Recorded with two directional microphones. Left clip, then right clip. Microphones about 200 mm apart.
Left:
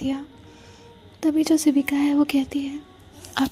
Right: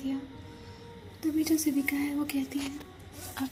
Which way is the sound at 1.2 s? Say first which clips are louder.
Left 8 dB; 50° left (ahead or behind).